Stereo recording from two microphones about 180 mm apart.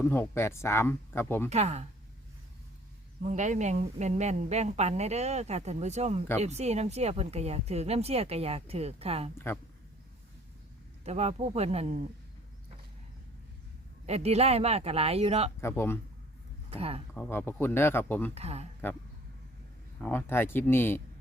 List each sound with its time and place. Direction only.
0.0 s speech: 10° left (ahead or behind)
1.5 s speech: 40° right (ahead or behind)
3.2 s speech: 40° right (ahead or behind)
11.0 s speech: 35° right (ahead or behind)
14.1 s speech: 35° right (ahead or behind)
15.6 s speech: 10° left (ahead or behind)
16.6 s speech: 35° right (ahead or behind)
17.2 s speech: 10° left (ahead or behind)
18.3 s speech: 35° right (ahead or behind)
20.0 s speech: 10° left (ahead or behind)